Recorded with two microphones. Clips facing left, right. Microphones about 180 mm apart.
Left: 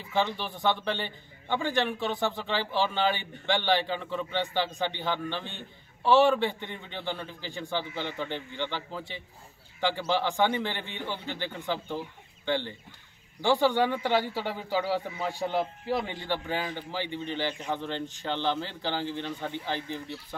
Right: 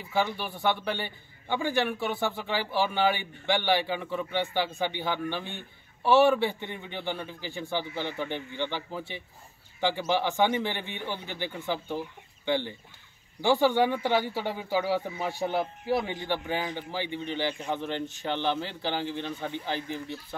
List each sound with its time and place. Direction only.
0.1 s speech: 10° right (ahead or behind)